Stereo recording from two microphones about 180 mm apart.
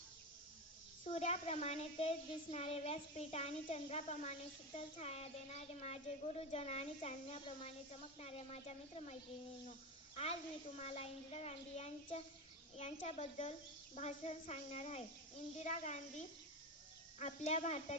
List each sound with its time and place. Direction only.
1.0 s a woman's voice: 35° left (ahead or behind)
10.8 s a woman's voice: 35° left (ahead or behind)